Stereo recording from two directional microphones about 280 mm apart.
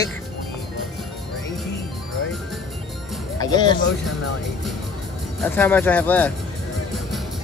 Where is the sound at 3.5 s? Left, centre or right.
Centre.